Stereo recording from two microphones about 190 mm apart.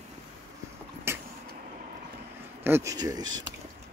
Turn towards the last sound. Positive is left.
turn(degrees=-20)  # may be behind; listen again after turning